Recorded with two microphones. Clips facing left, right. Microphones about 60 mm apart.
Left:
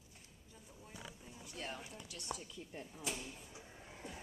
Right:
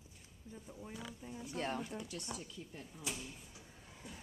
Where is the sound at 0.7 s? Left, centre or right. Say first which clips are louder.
Right 4 dB; right.